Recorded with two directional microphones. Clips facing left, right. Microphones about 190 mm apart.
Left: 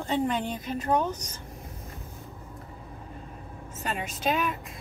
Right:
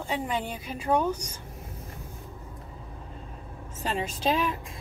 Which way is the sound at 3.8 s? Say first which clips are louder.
Right 3 dB; 30° right (ahead or behind).